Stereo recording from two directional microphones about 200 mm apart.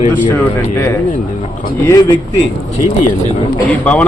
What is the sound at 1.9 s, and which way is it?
Speech, 20° left (ahead or behind).